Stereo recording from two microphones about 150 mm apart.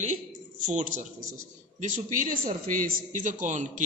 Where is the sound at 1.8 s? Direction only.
60° right (ahead or behind).